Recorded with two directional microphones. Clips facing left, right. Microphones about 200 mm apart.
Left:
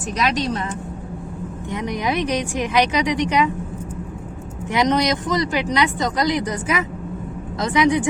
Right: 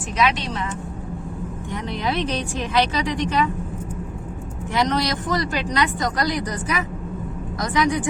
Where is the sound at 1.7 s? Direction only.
15° left (ahead or behind).